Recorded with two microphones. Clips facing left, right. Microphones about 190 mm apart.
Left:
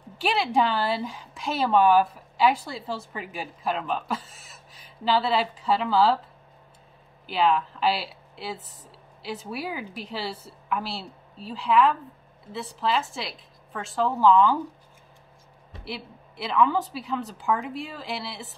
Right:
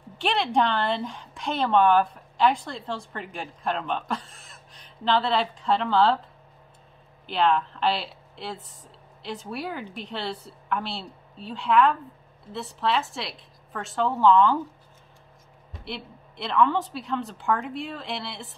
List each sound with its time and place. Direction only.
0.2 s a woman's voice: 5° left (ahead or behind)
7.2 s a woman's voice: 5° left (ahead or behind)
15.8 s a woman's voice: 5° left (ahead or behind)